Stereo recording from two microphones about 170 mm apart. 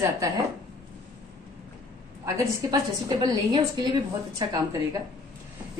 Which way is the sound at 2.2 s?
20° right (ahead or behind).